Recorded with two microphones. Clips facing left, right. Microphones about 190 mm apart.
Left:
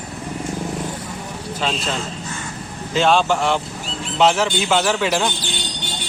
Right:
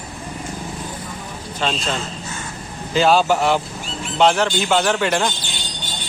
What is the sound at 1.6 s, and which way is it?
A man's voice, 5° left (ahead or behind).